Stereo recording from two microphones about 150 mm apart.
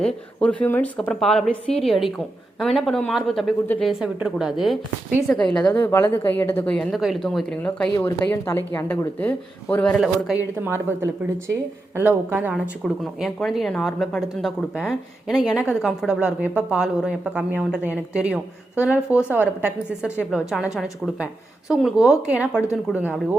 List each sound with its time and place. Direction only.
0.0 s a woman's voice: 10° left (ahead or behind)
10.0 s a woman's voice: 5° right (ahead or behind)
10.6 s a woman's voice: 15° right (ahead or behind)